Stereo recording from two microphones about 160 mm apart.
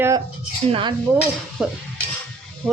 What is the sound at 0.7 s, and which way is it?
Speech, 30° right (ahead or behind).